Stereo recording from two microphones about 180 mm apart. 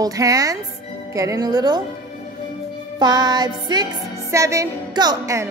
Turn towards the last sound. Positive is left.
turn(degrees=-15)  # may be behind; listen again after turning